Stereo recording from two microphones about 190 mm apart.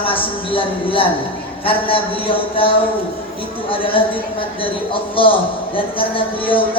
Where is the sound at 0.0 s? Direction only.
30° left (ahead or behind).